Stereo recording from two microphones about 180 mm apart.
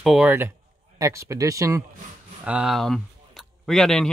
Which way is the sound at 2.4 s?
5° right (ahead or behind).